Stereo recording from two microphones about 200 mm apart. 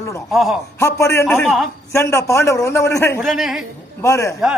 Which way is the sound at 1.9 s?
15° left (ahead or behind).